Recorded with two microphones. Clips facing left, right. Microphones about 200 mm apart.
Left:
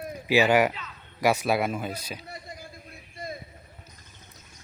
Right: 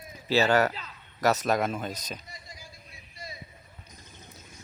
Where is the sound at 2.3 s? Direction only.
55° left (ahead or behind).